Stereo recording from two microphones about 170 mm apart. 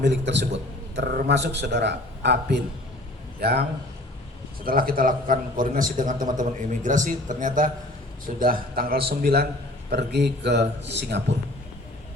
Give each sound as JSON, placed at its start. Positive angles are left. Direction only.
{"t": 0.0, "sound": "a man's voice", "side_deg": -90}
{"t": 4.6, "sound": "a man's voice", "side_deg": -55}
{"t": 9.9, "sound": "a man's voice", "side_deg": -80}